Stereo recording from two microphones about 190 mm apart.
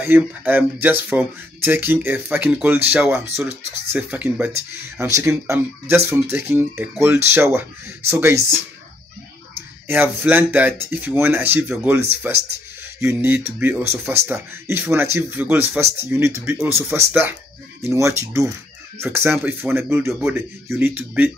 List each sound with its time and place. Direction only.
0.0 s speech: 10° right (ahead or behind)
9.8 s speech: 10° right (ahead or behind)
20.6 s speech: 15° right (ahead or behind)